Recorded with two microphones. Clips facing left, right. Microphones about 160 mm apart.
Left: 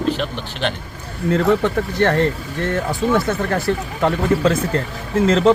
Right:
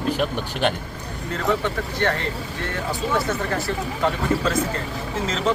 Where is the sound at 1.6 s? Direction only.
50° left (ahead or behind).